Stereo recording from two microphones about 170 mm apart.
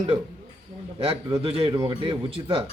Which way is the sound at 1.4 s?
35° right (ahead or behind).